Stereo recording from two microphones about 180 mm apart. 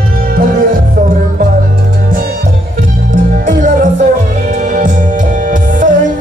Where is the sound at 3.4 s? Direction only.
45° right (ahead or behind).